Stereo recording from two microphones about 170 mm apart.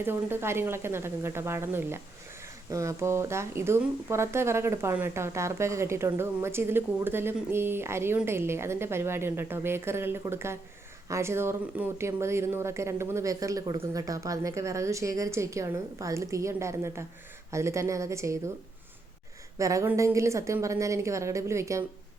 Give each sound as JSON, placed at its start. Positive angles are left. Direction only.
{"t": 0.0, "sound": "speech", "side_deg": -15}
{"t": 19.5, "sound": "speech", "side_deg": -20}